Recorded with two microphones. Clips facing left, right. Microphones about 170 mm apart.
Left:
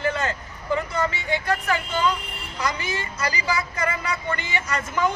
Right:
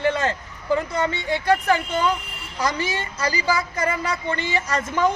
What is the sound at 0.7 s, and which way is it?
A woman's voice, 30° right (ahead or behind).